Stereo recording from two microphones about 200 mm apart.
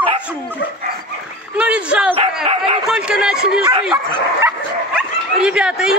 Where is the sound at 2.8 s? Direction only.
5° right (ahead or behind).